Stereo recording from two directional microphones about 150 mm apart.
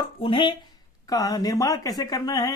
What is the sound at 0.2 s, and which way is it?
Speech, 30° left (ahead or behind).